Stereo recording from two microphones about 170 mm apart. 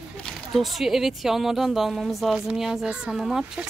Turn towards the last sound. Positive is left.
turn(degrees=-5)  # may be behind; listen again after turning